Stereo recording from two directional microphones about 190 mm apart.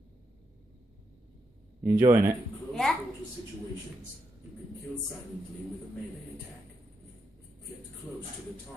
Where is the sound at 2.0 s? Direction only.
15° right (ahead or behind).